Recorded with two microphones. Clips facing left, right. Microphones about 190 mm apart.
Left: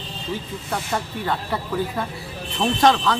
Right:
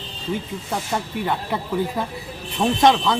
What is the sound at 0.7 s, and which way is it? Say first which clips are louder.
Speech: right 1 dB; 15° right (ahead or behind).